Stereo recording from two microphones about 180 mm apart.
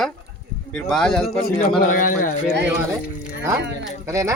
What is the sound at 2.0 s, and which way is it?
Speech, 50° left (ahead or behind).